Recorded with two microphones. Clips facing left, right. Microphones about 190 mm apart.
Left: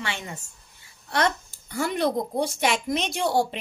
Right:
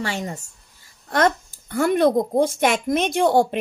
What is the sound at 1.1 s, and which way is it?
Speech, 50° right (ahead or behind).